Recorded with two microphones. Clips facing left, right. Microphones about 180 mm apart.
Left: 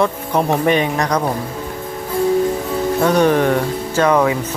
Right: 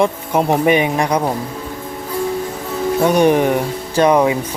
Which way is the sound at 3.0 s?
15° right (ahead or behind).